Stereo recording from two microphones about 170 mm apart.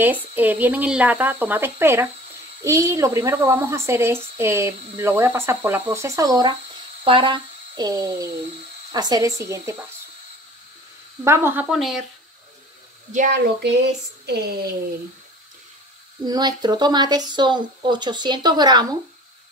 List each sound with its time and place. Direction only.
0.0 s a woman's voice: 10° right (ahead or behind)
11.2 s a woman's voice: 15° right (ahead or behind)
11.7 s speech: centre (ahead or behind)
13.1 s speech: 50° right (ahead or behind)
14.2 s speech: 70° right (ahead or behind)
16.3 s speech: 25° right (ahead or behind)